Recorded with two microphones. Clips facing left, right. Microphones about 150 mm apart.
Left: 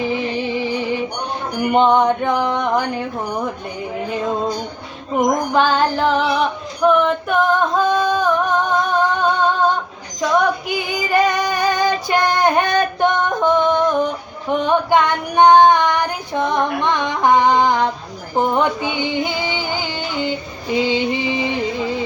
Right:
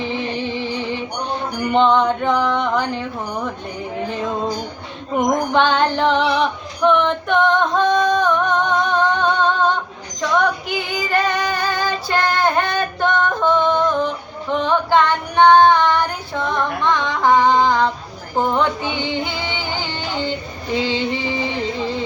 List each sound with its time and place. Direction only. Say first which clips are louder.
0.0 s music: left 3 dB; 10° left (ahead or behind)
5.1 s female singing: left 1 dB; 5° left (ahead or behind)
18.3 s music: left 1 dB; 15° left (ahead or behind)
20.8 s music: left 3 dB; 15° left (ahead or behind)